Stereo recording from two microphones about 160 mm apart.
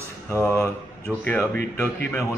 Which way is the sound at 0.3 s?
15° left (ahead or behind).